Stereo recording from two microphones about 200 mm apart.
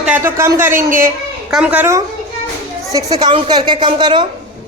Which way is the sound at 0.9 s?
10° right (ahead or behind).